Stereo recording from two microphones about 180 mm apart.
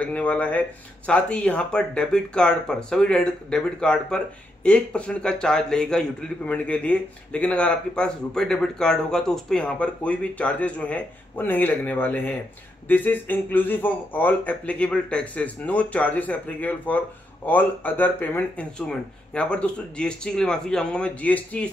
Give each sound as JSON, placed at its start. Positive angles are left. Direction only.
{"t": 0.0, "sound": "a man's voice", "side_deg": 10}